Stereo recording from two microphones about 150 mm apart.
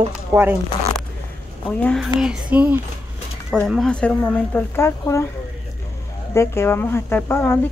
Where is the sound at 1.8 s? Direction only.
5° left (ahead or behind).